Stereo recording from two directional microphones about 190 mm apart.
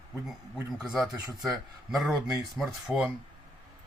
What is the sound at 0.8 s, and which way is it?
Speech, centre (ahead or behind).